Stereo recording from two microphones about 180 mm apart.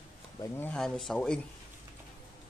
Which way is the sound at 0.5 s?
5° left (ahead or behind).